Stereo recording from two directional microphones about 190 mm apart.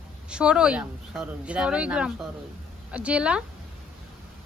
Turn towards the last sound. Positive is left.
turn(degrees=-5)  # may be behind; listen again after turning